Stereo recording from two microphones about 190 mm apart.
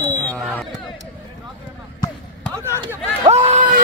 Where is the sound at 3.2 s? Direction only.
35° right (ahead or behind).